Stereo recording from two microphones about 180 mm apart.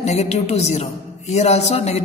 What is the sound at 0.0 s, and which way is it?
A woman's voice, 40° left (ahead or behind).